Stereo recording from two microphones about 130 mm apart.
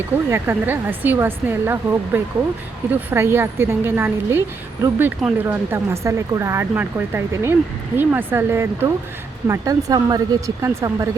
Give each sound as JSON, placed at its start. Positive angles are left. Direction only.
{"t": 0.3, "sound": "speech", "side_deg": -15}
{"t": 9.5, "sound": "speech", "side_deg": -25}